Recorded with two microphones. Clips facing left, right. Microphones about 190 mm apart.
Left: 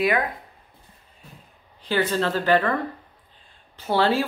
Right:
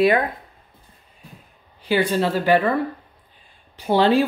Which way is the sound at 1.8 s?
10° right (ahead or behind).